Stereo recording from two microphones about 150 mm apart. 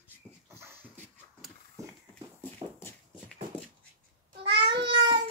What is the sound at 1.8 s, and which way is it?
Horse, 20° right (ahead or behind).